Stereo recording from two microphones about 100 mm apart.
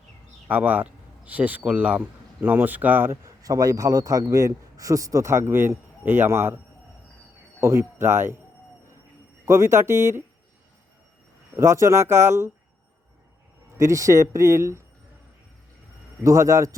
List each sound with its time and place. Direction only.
0.4 s speech: 20° right (ahead or behind)
7.6 s speech: 25° right (ahead or behind)
9.5 s speech: 25° right (ahead or behind)
11.5 s speech: 30° right (ahead or behind)
13.7 s speech: 30° right (ahead or behind)
16.2 s speech: 30° right (ahead or behind)